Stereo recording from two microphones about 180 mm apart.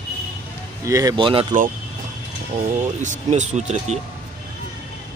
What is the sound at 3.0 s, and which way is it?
Speech, 40° right (ahead or behind).